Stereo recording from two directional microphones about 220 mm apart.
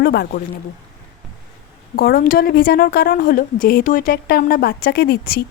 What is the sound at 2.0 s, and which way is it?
A woman's voice, 45° left (ahead or behind).